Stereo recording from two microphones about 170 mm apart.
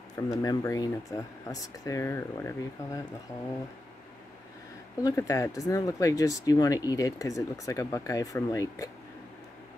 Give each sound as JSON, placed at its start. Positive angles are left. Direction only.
{"t": 0.3, "sound": "speech", "side_deg": 20}
{"t": 5.0, "sound": "speech", "side_deg": 20}